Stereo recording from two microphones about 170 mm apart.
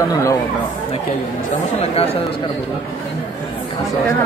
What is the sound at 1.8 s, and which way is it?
Speech, 35° left (ahead or behind).